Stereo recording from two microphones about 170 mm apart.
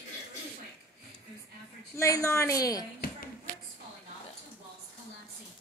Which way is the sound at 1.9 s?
20° left (ahead or behind).